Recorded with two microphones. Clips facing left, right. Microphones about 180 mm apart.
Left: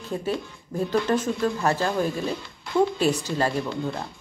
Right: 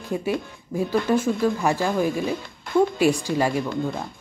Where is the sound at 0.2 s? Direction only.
10° right (ahead or behind).